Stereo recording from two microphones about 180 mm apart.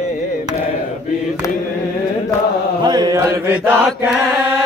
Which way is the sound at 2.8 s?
20° right (ahead or behind).